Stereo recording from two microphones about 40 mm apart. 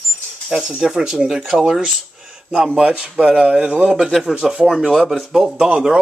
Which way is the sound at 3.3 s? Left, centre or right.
Right.